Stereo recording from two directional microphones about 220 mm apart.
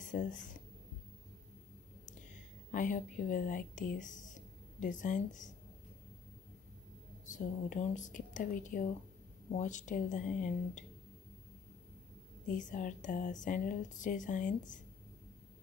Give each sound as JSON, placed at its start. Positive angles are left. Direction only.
{"t": 0.0, "sound": "speech", "side_deg": 35}
{"t": 2.7, "sound": "speech", "side_deg": 35}
{"t": 7.2, "sound": "speech", "side_deg": 35}
{"t": 12.4, "sound": "speech", "side_deg": 35}